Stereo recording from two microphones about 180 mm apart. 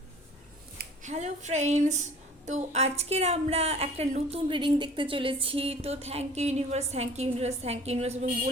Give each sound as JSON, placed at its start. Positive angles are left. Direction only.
{"t": 1.0, "sound": "a woman's voice", "side_deg": -40}